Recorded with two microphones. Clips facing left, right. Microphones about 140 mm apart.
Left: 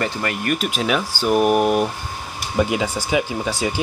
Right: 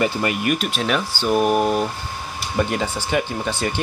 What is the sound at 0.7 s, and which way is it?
Speech, 5° left (ahead or behind).